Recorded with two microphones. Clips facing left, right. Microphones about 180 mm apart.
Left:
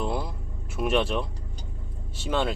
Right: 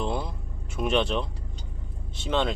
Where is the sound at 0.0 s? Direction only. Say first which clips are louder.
Even; 5° left (ahead or behind).